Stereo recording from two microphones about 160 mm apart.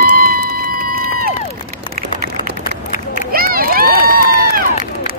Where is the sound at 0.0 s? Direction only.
65° right (ahead or behind).